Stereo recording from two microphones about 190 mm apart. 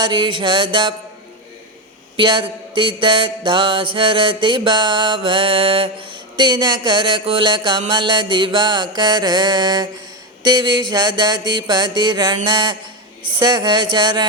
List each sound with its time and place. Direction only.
0.0 s mantra: 25° right (ahead or behind)
2.1 s mantra: 25° right (ahead or behind)